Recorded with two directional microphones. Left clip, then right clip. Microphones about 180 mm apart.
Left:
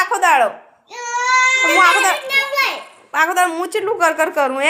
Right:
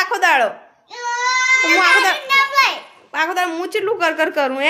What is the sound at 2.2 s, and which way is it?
Children playing, 5° right (ahead or behind).